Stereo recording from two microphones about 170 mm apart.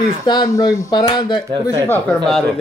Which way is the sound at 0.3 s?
25° left (ahead or behind).